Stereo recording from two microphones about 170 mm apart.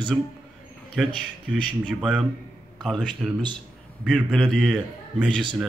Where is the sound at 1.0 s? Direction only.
Centre (ahead or behind).